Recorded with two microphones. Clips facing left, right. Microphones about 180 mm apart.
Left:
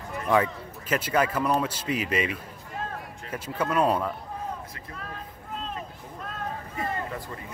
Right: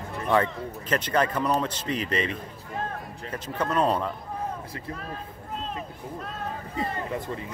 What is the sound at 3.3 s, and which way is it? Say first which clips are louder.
Speech: even; 10° left (ahead or behind).